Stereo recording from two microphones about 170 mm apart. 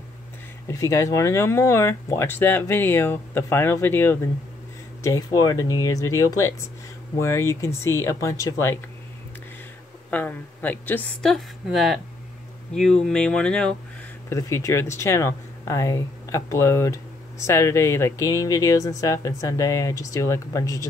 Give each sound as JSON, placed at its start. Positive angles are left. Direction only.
{"t": 0.7, "sound": "speech", "side_deg": 20}
{"t": 10.1, "sound": "speech", "side_deg": 10}
{"t": 14.3, "sound": "speech", "side_deg": 15}